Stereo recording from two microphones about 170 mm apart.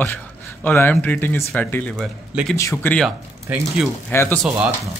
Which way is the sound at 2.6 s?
15° left (ahead or behind).